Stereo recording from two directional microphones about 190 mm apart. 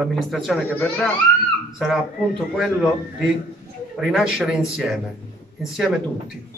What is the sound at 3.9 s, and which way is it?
Speech, centre (ahead or behind).